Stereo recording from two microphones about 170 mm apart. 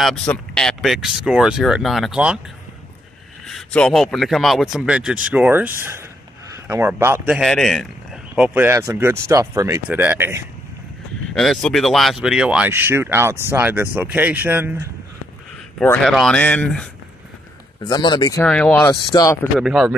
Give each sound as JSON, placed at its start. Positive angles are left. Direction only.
{"t": 0.0, "sound": "speech", "side_deg": 5}
{"t": 3.4, "sound": "speech", "side_deg": 5}
{"t": 7.3, "sound": "a man's voice", "side_deg": 0}
{"t": 8.5, "sound": "speech", "side_deg": -15}
{"t": 11.3, "sound": "speech", "side_deg": 0}
{"t": 15.8, "sound": "speech", "side_deg": 5}
{"t": 17.8, "sound": "speech", "side_deg": 25}
{"t": 18.4, "sound": "speech", "side_deg": 5}
{"t": 18.9, "sound": "speech", "side_deg": 20}
{"t": 19.6, "sound": "speech", "side_deg": -5}